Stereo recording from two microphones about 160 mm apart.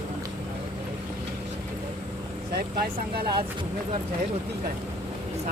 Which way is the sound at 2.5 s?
75° right (ahead or behind).